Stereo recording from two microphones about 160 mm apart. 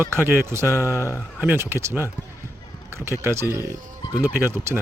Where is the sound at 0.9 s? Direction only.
20° left (ahead or behind).